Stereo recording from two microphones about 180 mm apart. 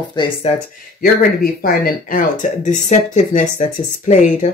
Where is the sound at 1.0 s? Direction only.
55° left (ahead or behind).